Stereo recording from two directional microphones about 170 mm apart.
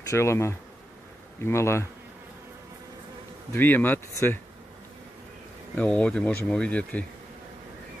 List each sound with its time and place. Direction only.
0.1 s speech: 15° left (ahead or behind)
3.5 s speech: 10° left (ahead or behind)
5.8 s speech: 5° left (ahead or behind)